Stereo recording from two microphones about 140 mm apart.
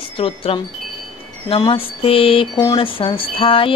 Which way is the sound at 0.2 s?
40° left (ahead or behind).